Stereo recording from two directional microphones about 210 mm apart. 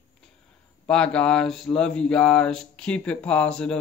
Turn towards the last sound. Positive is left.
turn(degrees=5)  # may be behind; listen again after turning